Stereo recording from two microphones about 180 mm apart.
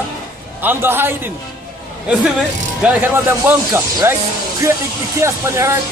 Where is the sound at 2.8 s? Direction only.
10° right (ahead or behind).